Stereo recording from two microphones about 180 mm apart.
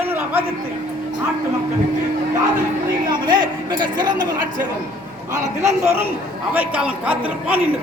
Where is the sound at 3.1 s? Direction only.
25° right (ahead or behind).